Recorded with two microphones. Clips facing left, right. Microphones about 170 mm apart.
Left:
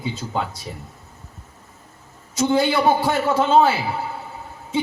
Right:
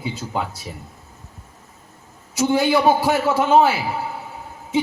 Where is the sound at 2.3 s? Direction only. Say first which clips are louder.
Right 1 dB; 10° right (ahead or behind).